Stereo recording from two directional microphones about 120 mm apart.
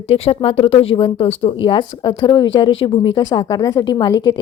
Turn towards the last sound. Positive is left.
turn(degrees=35)  # may be behind; listen again after turning